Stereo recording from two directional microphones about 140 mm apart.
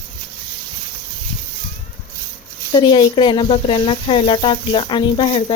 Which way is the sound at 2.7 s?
35° left (ahead or behind).